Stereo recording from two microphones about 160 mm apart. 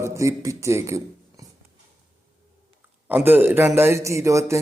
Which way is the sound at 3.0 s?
10° right (ahead or behind).